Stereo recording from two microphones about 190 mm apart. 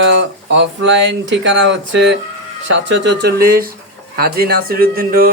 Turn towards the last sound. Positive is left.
turn(degrees=-50)  # may be behind; listen again after turning